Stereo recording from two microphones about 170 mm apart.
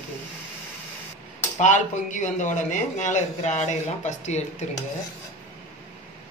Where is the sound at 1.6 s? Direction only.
45° left (ahead or behind).